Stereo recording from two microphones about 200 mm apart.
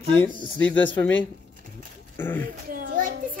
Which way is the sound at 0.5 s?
10° left (ahead or behind).